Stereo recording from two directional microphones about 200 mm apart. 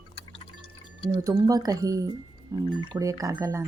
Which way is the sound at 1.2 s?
15° right (ahead or behind).